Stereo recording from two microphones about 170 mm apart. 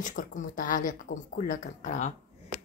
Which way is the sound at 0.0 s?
50° left (ahead or behind).